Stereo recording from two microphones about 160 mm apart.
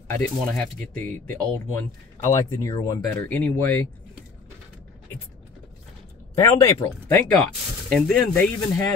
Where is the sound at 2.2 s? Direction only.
20° left (ahead or behind).